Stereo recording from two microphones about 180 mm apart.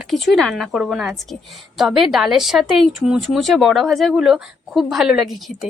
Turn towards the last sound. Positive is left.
turn(degrees=0)  # may be behind; listen again after turning